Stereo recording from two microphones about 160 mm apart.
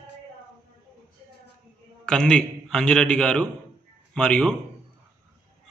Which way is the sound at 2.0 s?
5° left (ahead or behind).